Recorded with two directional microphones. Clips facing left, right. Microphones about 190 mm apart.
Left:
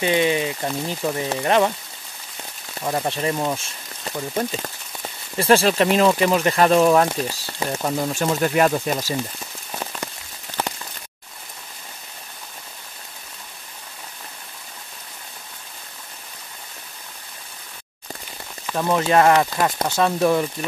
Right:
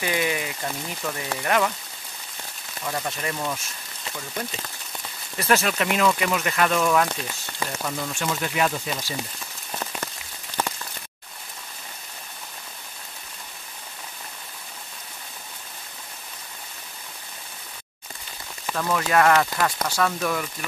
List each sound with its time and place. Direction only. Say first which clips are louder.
0.0 s speech: left 6 dB; 25° left (ahead or behind)
2.8 s speech: left 6 dB; 35° left (ahead or behind)
4.0 s speech: left 8 dB; 40° left (ahead or behind)
5.4 s speech: left 6 dB; 30° left (ahead or behind); by 9.1 s 50° left (ahead or behind)
9.7 s rain on surface: left 1 dB; 10° left (ahead or behind)
18.8 s speech: left 4 dB; 25° left (ahead or behind)